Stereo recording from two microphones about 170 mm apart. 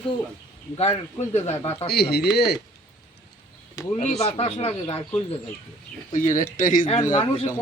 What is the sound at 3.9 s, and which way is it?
Speech, 40° left (ahead or behind).